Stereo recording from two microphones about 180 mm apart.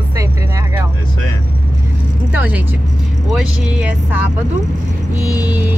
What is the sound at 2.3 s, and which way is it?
Speech, 10° right (ahead or behind).